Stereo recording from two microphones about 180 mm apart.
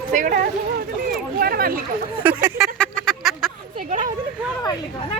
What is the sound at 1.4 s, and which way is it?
Speech, 55° right (ahead or behind).